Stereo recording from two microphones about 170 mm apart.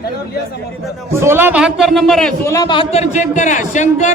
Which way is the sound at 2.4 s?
20° left (ahead or behind).